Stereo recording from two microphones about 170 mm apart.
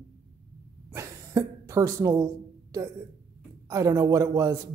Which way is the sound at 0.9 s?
15° right (ahead or behind).